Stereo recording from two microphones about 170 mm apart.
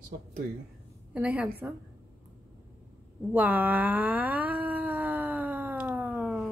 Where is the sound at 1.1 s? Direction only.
10° right (ahead or behind).